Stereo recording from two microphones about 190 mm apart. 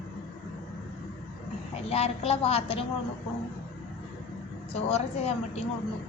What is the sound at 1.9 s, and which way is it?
Speech, 30° left (ahead or behind).